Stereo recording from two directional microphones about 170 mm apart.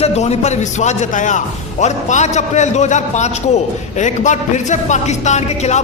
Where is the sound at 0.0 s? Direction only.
40° left (ahead or behind).